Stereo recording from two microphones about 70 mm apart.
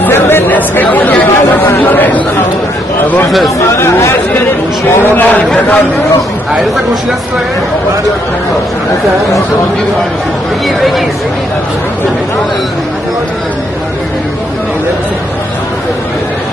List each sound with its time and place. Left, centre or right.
0.0 s chatter: left
3.3 s speech: centre
3.5 s chatter: left
5.0 s a sound: left
5.4 s a man's voice: centre